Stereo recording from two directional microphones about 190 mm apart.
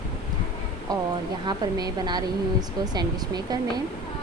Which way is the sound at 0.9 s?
20° right (ahead or behind).